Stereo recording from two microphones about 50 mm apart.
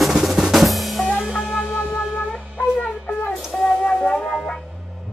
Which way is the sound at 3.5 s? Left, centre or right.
Centre.